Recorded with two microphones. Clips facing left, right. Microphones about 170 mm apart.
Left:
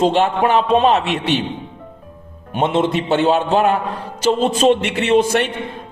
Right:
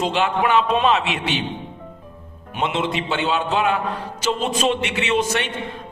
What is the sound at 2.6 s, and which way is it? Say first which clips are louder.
A man's voice: left 6 dB; 50° left (ahead or behind).